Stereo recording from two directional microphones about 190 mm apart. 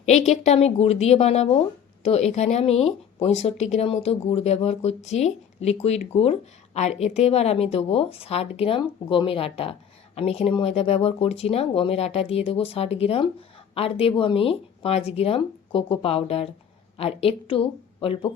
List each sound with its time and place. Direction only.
0.0 s speech: 35° left (ahead or behind)